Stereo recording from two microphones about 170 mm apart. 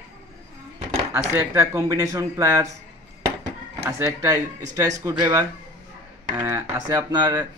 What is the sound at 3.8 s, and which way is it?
Speech, 15° right (ahead or behind).